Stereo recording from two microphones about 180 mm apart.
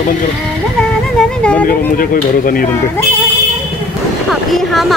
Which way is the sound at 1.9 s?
50° left (ahead or behind).